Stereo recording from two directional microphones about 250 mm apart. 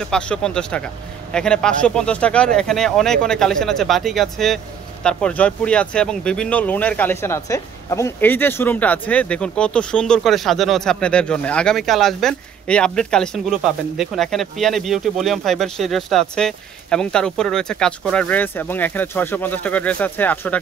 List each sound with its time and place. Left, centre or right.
0.0 s speech: centre